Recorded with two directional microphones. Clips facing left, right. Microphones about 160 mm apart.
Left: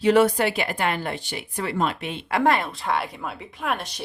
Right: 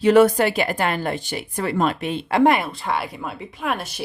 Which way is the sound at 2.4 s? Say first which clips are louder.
Right 4 dB; 15° right (ahead or behind).